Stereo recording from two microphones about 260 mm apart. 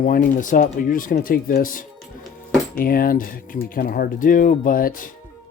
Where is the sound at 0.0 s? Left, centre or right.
Left.